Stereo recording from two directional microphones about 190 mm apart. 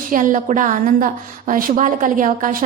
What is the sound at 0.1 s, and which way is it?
A woman's voice, 45° right (ahead or behind).